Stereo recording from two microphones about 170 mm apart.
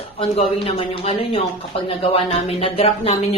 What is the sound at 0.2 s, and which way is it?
Speech, 35° left (ahead or behind).